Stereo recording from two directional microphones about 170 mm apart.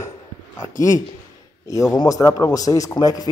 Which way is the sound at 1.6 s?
20° left (ahead or behind).